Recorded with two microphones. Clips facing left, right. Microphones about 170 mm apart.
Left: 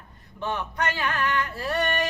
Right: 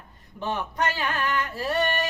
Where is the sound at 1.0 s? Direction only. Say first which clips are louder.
Left 1 dB; 20° right (ahead or behind).